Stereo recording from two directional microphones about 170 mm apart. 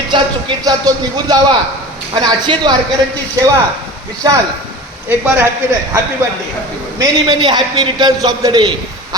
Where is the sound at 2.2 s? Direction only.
25° right (ahead or behind).